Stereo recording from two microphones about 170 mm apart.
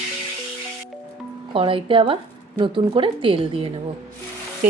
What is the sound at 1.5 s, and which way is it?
A woman's voice, 30° right (ahead or behind).